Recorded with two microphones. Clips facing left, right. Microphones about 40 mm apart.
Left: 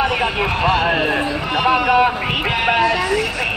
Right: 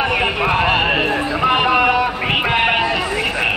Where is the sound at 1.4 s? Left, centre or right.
Centre.